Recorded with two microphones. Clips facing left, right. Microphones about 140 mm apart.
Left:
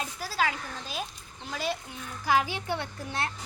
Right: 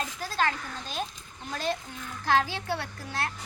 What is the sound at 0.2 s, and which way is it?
A child's voice, 5° left (ahead or behind).